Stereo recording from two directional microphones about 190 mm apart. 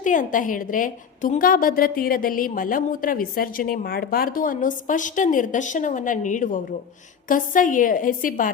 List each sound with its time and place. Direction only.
0.0 s a woman's voice: 45° left (ahead or behind)